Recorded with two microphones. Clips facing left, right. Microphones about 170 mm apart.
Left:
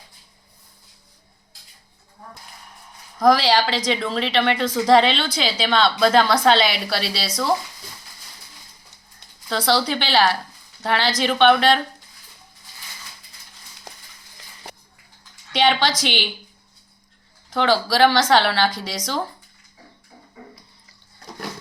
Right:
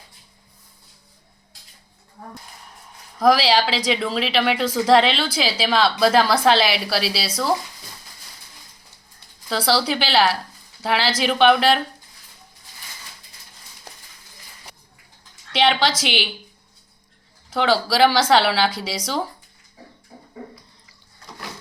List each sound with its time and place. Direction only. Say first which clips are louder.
2.2 s speech: right 3 dB; 65° right (ahead or behind)
3.2 s a woman's voice: even; 5° right (ahead or behind)
9.5 s a woman's voice: even; 5° right (ahead or behind)
15.5 s a woman's voice: even; centre (ahead or behind)
17.5 s a woman's voice: even; 5° right (ahead or behind)